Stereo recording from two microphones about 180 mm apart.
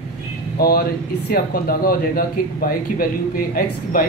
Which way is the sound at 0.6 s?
60° left (ahead or behind).